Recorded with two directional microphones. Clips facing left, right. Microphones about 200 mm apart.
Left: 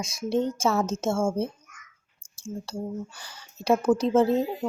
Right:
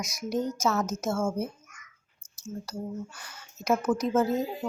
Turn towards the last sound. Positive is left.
turn(degrees=30)  # may be behind; listen again after turning